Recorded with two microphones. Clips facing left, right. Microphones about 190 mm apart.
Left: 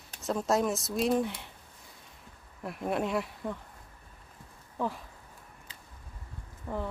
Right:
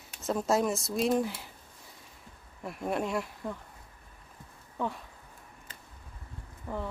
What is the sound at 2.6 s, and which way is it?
Speech, centre (ahead or behind).